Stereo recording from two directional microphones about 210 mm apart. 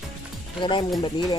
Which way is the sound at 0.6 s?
25° left (ahead or behind).